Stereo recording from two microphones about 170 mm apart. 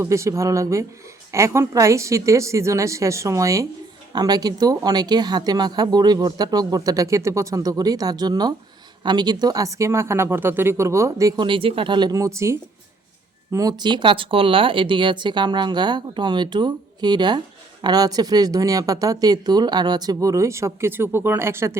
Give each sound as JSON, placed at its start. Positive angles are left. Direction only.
{"t": 0.0, "sound": "a woman's voice", "side_deg": -15}